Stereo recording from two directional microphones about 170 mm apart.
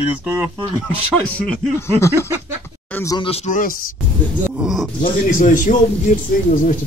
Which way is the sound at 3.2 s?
40° left (ahead or behind).